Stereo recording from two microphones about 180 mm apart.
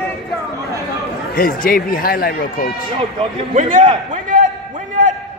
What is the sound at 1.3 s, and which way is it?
Speech, 50° left (ahead or behind).